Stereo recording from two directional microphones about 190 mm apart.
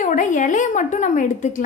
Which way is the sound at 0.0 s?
40° left (ahead or behind).